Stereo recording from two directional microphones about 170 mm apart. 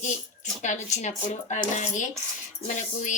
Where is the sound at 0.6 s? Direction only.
45° left (ahead or behind).